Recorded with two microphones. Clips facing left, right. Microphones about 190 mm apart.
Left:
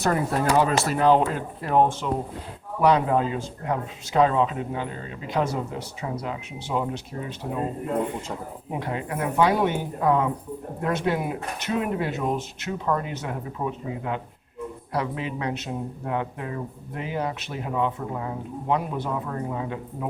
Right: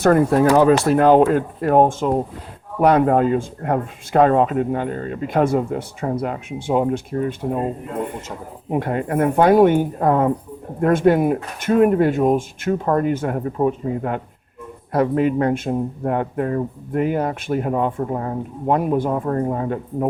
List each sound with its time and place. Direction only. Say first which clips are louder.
0.0 s speech: right 9 dB; 55° right (ahead or behind)
8.7 s speech: right 9 dB; 50° right (ahead or behind)